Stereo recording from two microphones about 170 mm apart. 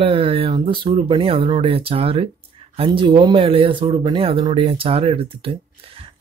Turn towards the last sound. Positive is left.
turn(degrees=-30)  # may be behind; listen again after turning